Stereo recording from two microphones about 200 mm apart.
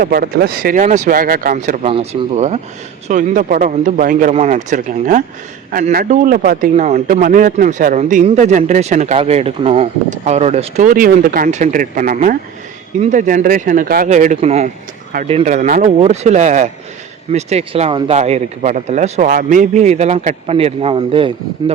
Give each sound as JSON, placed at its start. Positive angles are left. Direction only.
{"t": 0.0, "sound": "a man's voice", "side_deg": -50}